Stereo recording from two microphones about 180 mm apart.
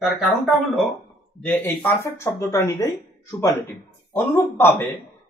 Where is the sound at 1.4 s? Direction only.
10° left (ahead or behind).